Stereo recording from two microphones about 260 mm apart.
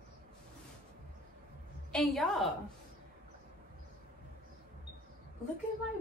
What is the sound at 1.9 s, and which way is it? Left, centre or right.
Speech, centre.